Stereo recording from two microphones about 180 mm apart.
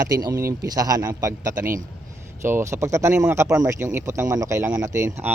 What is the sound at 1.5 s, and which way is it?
Speech, 50° right (ahead or behind).